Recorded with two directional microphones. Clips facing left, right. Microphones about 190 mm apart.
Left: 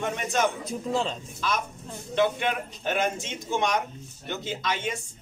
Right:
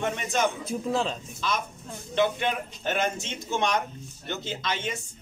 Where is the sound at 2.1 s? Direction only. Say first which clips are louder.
Even; 5° left (ahead or behind).